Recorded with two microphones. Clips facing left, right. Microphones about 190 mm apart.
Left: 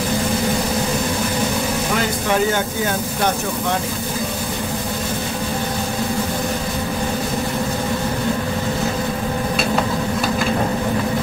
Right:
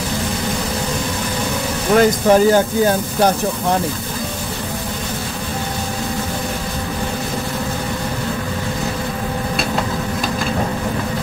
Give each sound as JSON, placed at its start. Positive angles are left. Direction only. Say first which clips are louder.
{"t": 2.0, "sound": "speech", "louder": "right 10 dB", "side_deg": -40}